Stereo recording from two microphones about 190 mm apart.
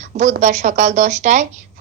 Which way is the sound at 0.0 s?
40° right (ahead or behind).